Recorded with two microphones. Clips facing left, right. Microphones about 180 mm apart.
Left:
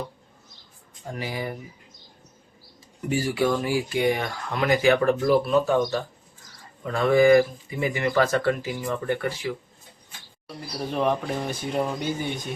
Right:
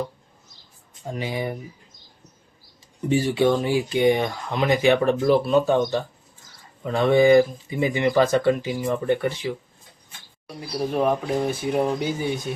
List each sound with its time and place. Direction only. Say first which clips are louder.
1.0 s speech: right 3 dB; 20° right (ahead or behind)
3.1 s speech: right 4 dB; 25° right (ahead or behind)
10.8 s speech: right 3 dB; 10° right (ahead or behind)